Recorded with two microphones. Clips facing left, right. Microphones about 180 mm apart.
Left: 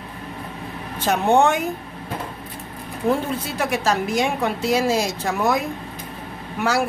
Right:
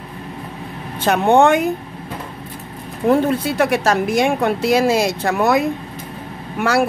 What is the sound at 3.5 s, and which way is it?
A woman's voice, 55° right (ahead or behind).